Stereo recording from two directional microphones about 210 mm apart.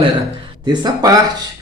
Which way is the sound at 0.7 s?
20° right (ahead or behind).